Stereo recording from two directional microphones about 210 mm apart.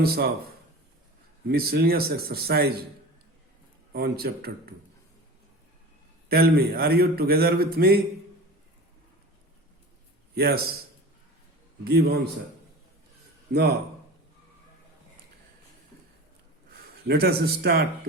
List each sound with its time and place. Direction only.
0.0 s a man's voice: 45° right (ahead or behind)
3.9 s a man's voice: 45° right (ahead or behind)
6.2 s a man's voice: 45° right (ahead or behind)
10.3 s a man's voice: 50° right (ahead or behind)
11.9 s a man's voice: 50° right (ahead or behind)
13.5 s a man's voice: 45° right (ahead or behind)
17.1 s a man's voice: 50° right (ahead or behind)